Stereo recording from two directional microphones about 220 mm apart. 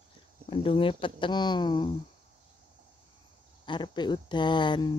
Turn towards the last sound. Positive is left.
turn(degrees=20)  # may be behind; listen again after turning